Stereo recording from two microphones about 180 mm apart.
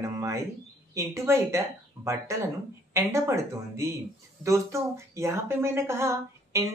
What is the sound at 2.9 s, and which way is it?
Speech, 15° right (ahead or behind).